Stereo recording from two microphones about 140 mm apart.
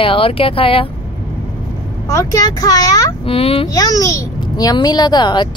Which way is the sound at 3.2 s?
45° left (ahead or behind).